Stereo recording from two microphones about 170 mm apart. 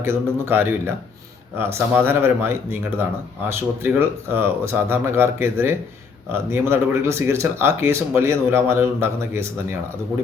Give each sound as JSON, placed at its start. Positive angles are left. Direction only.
{"t": 0.0, "sound": "speech", "side_deg": -15}
{"t": 3.8, "sound": "speech", "side_deg": -15}